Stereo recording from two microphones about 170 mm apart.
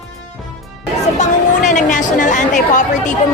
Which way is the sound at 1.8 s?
45° left (ahead or behind).